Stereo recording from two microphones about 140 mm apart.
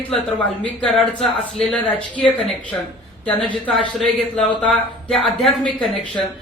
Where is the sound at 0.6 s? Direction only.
5° left (ahead or behind).